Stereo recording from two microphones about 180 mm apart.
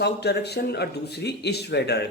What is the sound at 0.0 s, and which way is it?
Speech, 65° left (ahead or behind).